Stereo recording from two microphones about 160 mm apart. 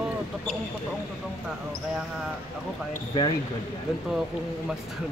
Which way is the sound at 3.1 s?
25° left (ahead or behind).